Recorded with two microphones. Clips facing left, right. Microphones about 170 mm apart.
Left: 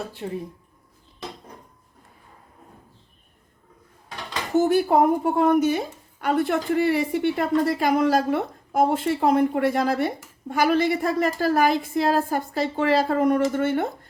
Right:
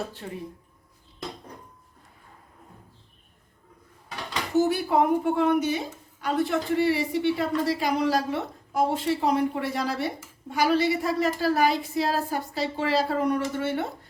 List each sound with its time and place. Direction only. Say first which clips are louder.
0.2 s speech: left 6 dB; 25° left (ahead or behind)
4.5 s a woman's voice: left 4 dB; 50° left (ahead or behind)